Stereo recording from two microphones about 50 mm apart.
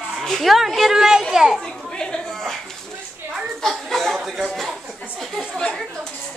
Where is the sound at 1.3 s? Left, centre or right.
Centre.